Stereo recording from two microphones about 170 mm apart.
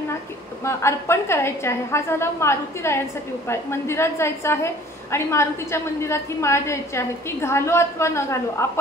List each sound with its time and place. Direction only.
0.7 s a woman's voice: 15° left (ahead or behind)